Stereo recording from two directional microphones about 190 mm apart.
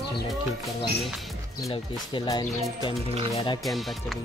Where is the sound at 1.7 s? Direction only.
25° left (ahead or behind).